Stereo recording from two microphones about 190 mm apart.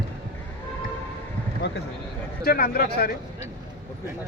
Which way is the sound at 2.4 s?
50° left (ahead or behind).